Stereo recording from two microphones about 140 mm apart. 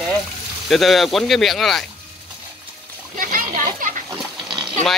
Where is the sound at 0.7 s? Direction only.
Centre (ahead or behind).